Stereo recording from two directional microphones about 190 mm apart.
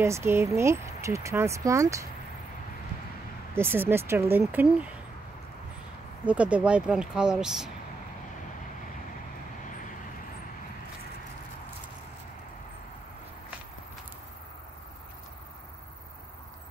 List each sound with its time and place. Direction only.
0.0 s speech: 15° right (ahead or behind)
3.5 s speech: 10° right (ahead or behind)
6.2 s speech: 5° right (ahead or behind)